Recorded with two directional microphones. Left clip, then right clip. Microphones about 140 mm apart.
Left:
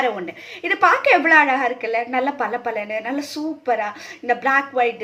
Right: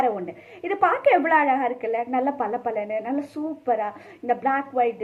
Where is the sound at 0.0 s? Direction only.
35° left (ahead or behind).